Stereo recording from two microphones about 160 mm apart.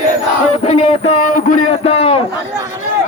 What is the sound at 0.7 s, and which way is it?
Music, 40° left (ahead or behind).